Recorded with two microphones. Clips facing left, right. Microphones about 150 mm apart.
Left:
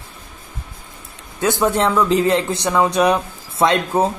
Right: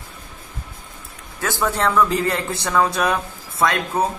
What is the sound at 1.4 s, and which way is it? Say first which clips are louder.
Speech: left 4 dB; 20° left (ahead or behind).